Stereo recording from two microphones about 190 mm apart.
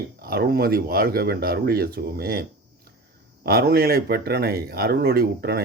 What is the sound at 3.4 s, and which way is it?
Speech, 55° right (ahead or behind).